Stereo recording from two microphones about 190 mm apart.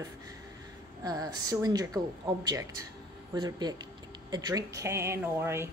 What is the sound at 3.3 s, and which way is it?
Speech, 20° right (ahead or behind).